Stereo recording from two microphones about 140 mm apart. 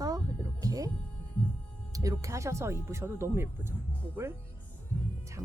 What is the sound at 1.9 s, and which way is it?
Speech, 25° right (ahead or behind).